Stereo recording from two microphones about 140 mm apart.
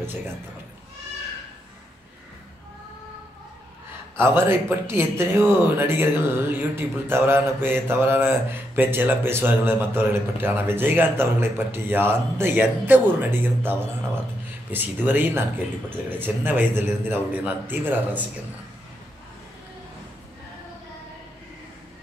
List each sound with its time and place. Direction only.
4.2 s speech: 15° right (ahead or behind)